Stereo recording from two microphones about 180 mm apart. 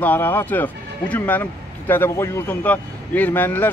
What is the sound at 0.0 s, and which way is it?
Speech, 10° left (ahead or behind).